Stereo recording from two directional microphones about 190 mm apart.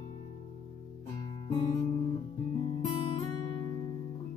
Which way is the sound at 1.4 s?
20° left (ahead or behind).